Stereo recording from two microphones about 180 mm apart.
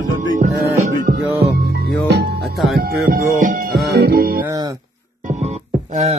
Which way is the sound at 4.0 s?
55° right (ahead or behind).